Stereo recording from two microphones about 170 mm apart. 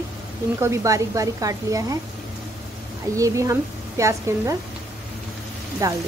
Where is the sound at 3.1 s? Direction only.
20° right (ahead or behind).